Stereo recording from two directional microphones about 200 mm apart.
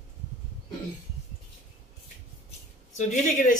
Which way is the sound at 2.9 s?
40° left (ahead or behind).